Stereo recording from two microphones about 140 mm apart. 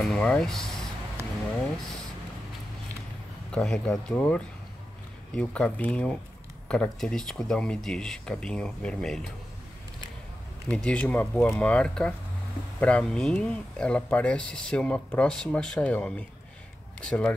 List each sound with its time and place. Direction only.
0.0 s speech: 5° left (ahead or behind)
1.2 s a sound: 20° right (ahead or behind)
3.5 s speech: 5° left (ahead or behind)
10.7 s speech: 5° left (ahead or behind)